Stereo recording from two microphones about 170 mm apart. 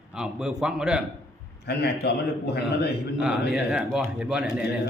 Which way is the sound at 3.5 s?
5° right (ahead or behind).